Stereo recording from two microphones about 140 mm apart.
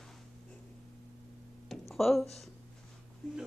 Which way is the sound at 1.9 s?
Centre (ahead or behind).